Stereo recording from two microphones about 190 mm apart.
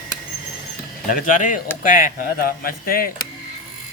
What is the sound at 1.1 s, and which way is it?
Speech, 45° left (ahead or behind).